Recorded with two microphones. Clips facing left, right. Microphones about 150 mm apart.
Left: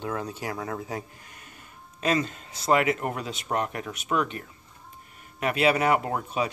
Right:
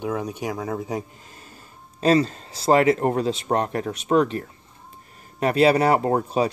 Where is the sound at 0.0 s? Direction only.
15° right (ahead or behind).